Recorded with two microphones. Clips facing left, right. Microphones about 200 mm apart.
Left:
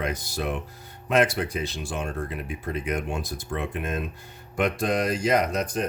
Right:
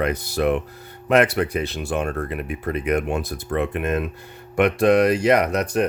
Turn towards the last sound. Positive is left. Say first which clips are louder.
# right 4 dB
turn(degrees=-65)  # may be behind; listen again after turning